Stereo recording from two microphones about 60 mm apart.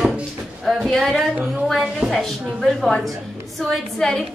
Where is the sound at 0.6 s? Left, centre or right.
Centre.